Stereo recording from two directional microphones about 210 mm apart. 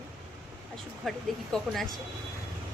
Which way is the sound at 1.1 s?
Centre (ahead or behind).